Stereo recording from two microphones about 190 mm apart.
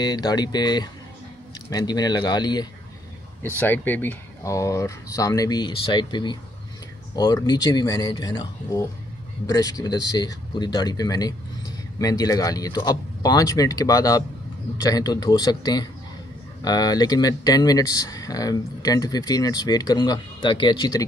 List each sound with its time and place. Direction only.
0.0 s speech: 20° left (ahead or behind)
3.4 s speech: 10° left (ahead or behind)